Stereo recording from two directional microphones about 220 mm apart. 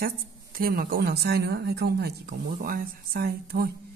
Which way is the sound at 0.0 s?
45° right (ahead or behind).